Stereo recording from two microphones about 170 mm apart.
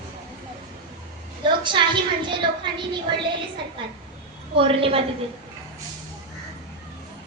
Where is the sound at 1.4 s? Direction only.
30° right (ahead or behind).